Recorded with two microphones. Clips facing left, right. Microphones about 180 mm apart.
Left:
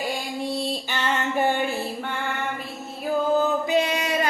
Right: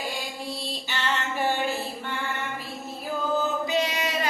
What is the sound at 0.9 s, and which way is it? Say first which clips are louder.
Music: left 3 dB; 55° left (ahead or behind).